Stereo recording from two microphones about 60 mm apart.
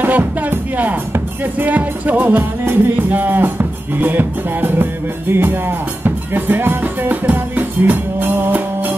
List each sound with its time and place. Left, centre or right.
0.0 s music: right